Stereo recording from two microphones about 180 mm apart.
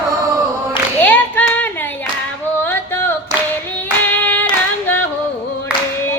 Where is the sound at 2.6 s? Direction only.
10° left (ahead or behind).